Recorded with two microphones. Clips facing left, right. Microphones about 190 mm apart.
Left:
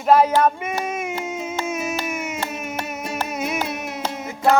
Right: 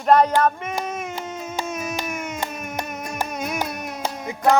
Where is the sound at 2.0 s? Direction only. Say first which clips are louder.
Left 2 dB; 5° left (ahead or behind).